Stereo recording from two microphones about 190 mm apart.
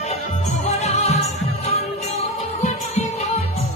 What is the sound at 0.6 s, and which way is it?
Music, 35° left (ahead or behind).